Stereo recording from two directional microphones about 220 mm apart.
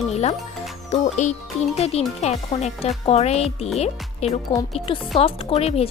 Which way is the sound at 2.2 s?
30° left (ahead or behind).